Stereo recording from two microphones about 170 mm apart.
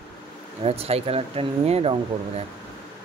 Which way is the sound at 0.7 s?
35° right (ahead or behind).